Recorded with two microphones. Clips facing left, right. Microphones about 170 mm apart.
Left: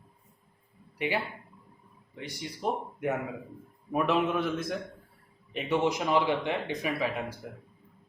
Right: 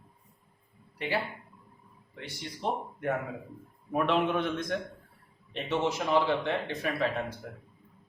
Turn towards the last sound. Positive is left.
turn(degrees=10)  # may be behind; listen again after turning